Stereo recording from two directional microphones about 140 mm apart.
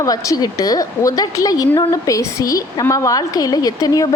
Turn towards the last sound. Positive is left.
turn(degrees=25)  # may be behind; listen again after turning